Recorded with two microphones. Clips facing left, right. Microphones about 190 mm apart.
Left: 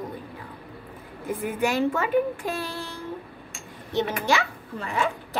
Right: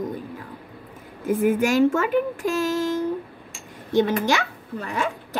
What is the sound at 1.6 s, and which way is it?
A child's voice, 45° right (ahead or behind).